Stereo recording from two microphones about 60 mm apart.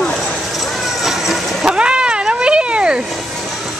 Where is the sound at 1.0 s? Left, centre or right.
Centre.